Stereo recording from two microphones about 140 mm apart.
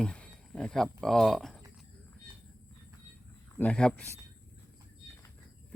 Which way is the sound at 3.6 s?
10° left (ahead or behind).